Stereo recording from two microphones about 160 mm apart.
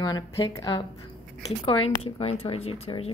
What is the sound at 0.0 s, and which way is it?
A woman's voice, 25° left (ahead or behind).